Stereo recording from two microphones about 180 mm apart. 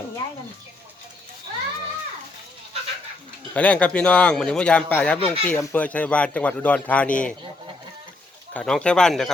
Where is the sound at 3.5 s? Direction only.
5° left (ahead or behind).